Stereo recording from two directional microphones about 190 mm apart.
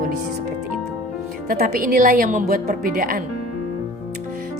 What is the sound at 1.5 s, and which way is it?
A woman's voice, 50° right (ahead or behind).